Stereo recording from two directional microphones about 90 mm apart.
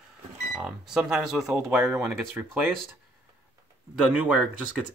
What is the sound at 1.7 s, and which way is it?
Speech, 30° right (ahead or behind).